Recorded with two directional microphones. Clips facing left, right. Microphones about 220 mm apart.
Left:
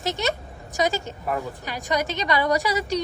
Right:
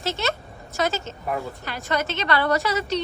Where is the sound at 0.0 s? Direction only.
15° left (ahead or behind).